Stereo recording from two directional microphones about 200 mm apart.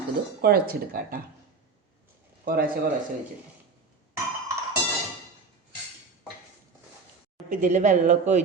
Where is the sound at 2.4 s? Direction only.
45° right (ahead or behind).